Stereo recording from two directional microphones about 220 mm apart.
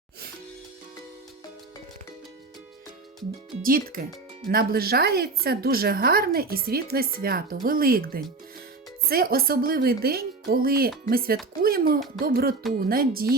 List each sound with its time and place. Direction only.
3.6 s a woman's voice: 40° right (ahead or behind)